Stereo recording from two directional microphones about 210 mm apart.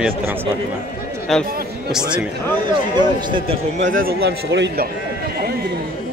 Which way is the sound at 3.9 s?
45° right (ahead or behind).